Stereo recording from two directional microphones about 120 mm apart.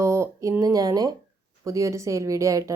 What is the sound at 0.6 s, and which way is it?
A woman's voice, 30° right (ahead or behind).